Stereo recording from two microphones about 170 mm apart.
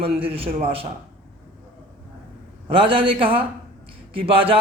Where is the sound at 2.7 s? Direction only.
30° right (ahead or behind).